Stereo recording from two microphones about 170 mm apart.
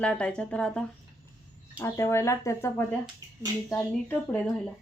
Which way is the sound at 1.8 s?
15° left (ahead or behind).